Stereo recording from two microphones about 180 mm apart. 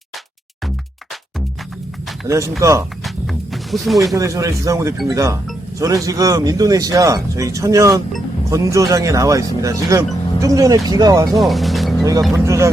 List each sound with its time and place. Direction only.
2.2 s speech: 15° right (ahead or behind)
3.0 s music: centre (ahead or behind)
4.1 s speech: 15° right (ahead or behind)
11.3 s music: centre (ahead or behind)
12.5 s speech: 15° right (ahead or behind)